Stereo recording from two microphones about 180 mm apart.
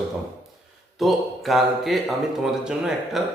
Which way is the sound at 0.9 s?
Centre (ahead or behind).